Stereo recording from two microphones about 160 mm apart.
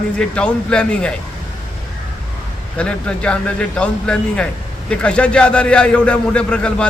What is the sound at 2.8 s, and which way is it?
A man's voice, 5° left (ahead or behind).